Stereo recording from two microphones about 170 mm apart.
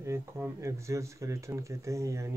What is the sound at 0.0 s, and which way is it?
Speech, 15° right (ahead or behind).